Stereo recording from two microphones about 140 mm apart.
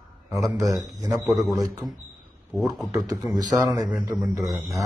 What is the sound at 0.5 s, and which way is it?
Speech, 25° right (ahead or behind).